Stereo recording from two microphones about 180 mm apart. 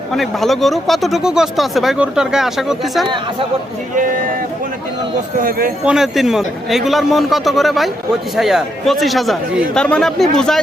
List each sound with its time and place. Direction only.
0.1 s speech: centre (ahead or behind)
3.9 s speech: 50° right (ahead or behind)
5.4 s speech: 50° right (ahead or behind)
5.8 s speech: 5° right (ahead or behind)